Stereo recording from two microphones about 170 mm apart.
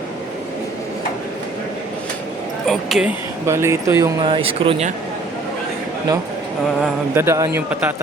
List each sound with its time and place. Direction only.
2.6 s speech: centre (ahead or behind)
3.4 s speech: 15° right (ahead or behind)
4.3 s speech: 30° right (ahead or behind)
7.1 s speech: 15° right (ahead or behind)